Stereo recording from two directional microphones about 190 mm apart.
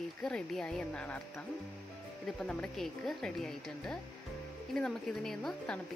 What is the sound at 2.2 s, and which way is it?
Speech, 5° left (ahead or behind).